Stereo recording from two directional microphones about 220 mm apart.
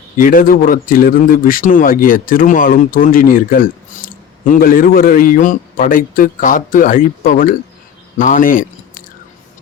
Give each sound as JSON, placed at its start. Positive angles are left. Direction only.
{"t": 0.2, "sound": "speech", "side_deg": 40}